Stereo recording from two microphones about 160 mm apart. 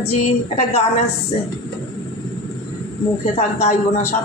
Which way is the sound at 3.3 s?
45° left (ahead or behind).